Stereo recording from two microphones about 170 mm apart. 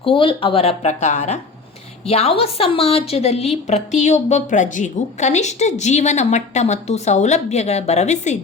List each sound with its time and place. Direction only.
0.0 s a woman's voice: 30° left (ahead or behind)